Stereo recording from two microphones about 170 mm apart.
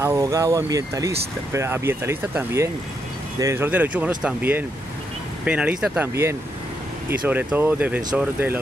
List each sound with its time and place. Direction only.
0.0 s speech: 15° right (ahead or behind)
7.1 s speech: 10° right (ahead or behind)